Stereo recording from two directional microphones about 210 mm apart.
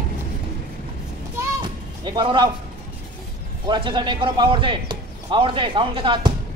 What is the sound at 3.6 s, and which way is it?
A man's voice, 20° right (ahead or behind).